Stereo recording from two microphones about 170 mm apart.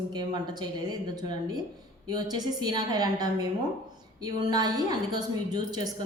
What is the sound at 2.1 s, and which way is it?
Speech, 25° right (ahead or behind).